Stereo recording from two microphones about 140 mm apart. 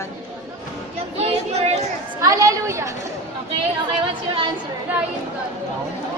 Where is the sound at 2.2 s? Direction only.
25° right (ahead or behind).